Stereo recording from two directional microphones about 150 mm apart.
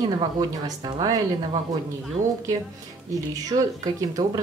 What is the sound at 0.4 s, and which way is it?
Speech, 25° right (ahead or behind).